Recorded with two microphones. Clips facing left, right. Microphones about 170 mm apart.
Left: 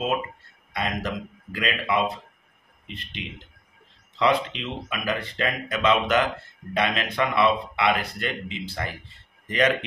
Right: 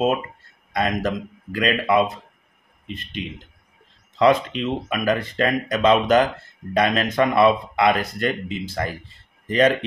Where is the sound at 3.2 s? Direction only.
45° right (ahead or behind).